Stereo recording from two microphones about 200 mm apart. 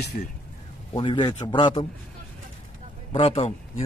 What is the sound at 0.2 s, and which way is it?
Speech, 40° left (ahead or behind).